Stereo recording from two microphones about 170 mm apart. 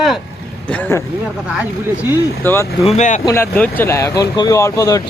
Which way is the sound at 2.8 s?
45° left (ahead or behind).